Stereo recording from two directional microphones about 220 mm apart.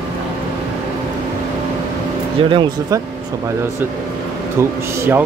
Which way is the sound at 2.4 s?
25° right (ahead or behind).